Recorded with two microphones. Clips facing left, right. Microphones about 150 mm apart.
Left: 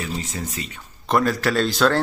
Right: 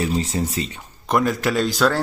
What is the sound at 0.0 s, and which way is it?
Speech, 30° right (ahead or behind).